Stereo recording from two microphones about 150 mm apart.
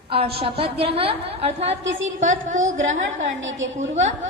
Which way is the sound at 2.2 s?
55° right (ahead or behind).